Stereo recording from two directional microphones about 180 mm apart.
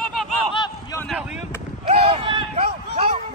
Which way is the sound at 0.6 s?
20° left (ahead or behind).